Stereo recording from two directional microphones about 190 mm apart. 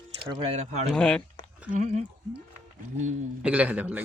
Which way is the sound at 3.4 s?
5° right (ahead or behind).